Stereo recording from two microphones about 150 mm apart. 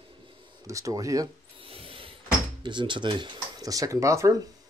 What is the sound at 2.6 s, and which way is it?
Speech, 30° right (ahead or behind).